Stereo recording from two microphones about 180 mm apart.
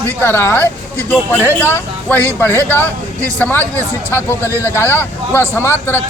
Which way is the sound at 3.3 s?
10° left (ahead or behind).